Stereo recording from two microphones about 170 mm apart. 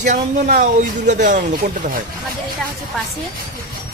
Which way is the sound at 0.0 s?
50° right (ahead or behind).